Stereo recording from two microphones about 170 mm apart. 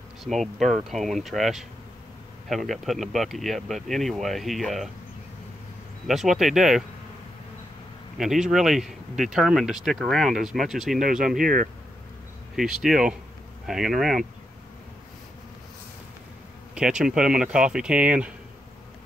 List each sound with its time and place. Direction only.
0.2 s speech: centre (ahead or behind)
6.0 s speech: centre (ahead or behind)
8.2 s speech: centre (ahead or behind)
11.4 s speech: 55° right (ahead or behind)
12.5 s speech: 5° right (ahead or behind)
16.7 s speech: 5° right (ahead or behind)